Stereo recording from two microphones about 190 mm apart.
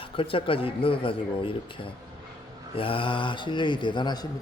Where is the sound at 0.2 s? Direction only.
30° left (ahead or behind).